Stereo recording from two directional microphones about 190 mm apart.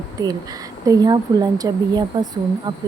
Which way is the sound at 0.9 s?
20° right (ahead or behind).